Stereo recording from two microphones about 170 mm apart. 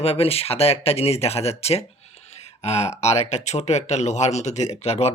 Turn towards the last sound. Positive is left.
turn(degrees=40)  # may be behind; listen again after turning